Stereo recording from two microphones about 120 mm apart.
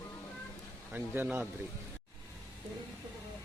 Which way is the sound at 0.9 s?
15° right (ahead or behind).